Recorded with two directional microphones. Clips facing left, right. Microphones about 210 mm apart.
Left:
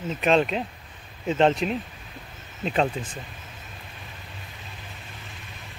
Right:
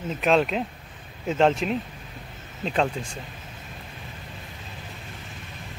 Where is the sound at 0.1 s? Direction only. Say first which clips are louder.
Even; centre (ahead or behind).